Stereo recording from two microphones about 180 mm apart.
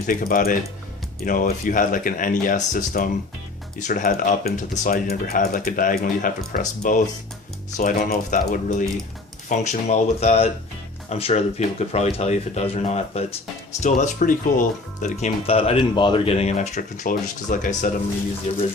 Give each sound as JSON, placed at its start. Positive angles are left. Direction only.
{"t": 0.1, "sound": "speech", "side_deg": 50}
{"t": 5.0, "sound": "speech", "side_deg": 60}
{"t": 9.5, "sound": "speech", "side_deg": 40}